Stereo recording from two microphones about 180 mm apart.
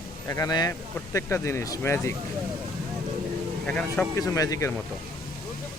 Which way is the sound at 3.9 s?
15° left (ahead or behind).